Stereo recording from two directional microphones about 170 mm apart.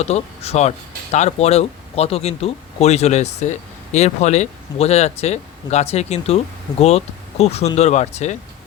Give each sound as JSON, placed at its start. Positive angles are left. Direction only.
{"t": 0.0, "sound": "speech", "side_deg": 40}